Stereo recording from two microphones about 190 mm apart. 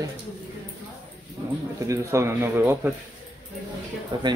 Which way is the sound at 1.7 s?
15° right (ahead or behind).